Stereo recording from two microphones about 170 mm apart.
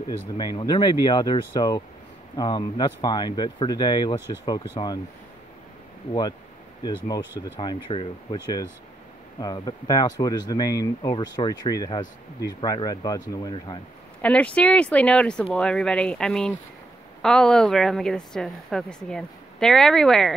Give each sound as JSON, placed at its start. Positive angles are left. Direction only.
{"t": 0.4, "sound": "speech", "side_deg": 25}
{"t": 7.3, "sound": "speech", "side_deg": 30}
{"t": 14.2, "sound": "speech", "side_deg": 5}